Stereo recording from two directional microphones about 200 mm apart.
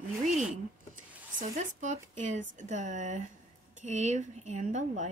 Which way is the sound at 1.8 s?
35° right (ahead or behind).